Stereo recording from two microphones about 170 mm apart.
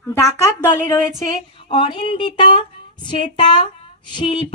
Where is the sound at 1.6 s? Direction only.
35° left (ahead or behind).